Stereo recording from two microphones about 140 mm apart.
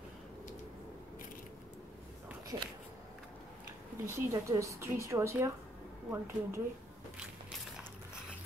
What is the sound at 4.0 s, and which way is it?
Speech, 20° right (ahead or behind).